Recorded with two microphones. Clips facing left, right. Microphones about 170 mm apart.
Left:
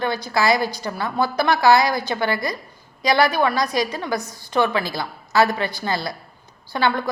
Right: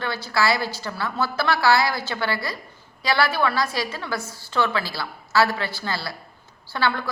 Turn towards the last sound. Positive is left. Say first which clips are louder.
# left 3 dB
turn(degrees=15)  # may be behind; listen again after turning